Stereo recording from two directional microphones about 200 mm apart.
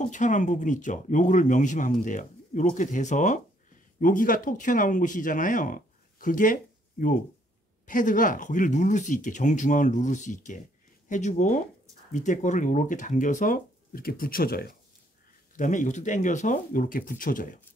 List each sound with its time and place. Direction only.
0.0 s speech: 40° left (ahead or behind)